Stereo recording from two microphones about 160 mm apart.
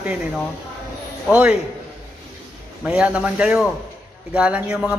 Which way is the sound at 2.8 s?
10° right (ahead or behind).